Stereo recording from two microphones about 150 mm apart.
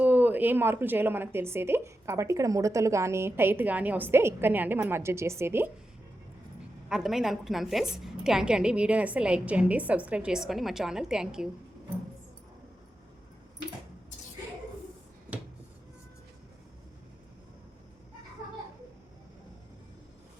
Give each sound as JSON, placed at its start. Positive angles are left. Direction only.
{"t": 0.0, "sound": "speech", "side_deg": -10}
{"t": 6.8, "sound": "a woman's voice", "side_deg": -5}